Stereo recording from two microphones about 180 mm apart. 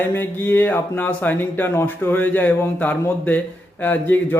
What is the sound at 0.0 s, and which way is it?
A man's voice, 10° left (ahead or behind).